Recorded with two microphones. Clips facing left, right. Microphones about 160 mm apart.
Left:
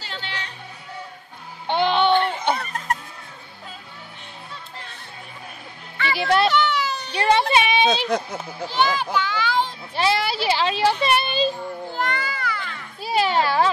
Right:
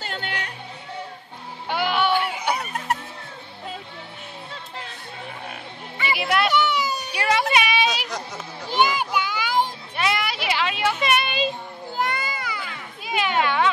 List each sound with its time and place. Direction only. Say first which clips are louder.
0.0 s music: right 3 dB; 50° right (ahead or behind)
1.7 s music: left 4 dB; 25° left (ahead or behind)
2.1 s fowl: left 4 dB; 5° right (ahead or behind)
2.5 s music: even; 10° right (ahead or behind)
6.1 s a sound: left 3 dB; 30° left (ahead or behind)
6.5 s a sound: even; 10° right (ahead or behind)
7.2 s a sound: left 3 dB; 30° left (ahead or behind)
8.7 s a child's voice: even; 15° right (ahead or behind)
9.9 s a child's voice: left 4 dB; 30° left (ahead or behind)
12.0 s music: right 1 dB; 10° right (ahead or behind)
13.0 s children playing: left 3 dB; 35° left (ahead or behind)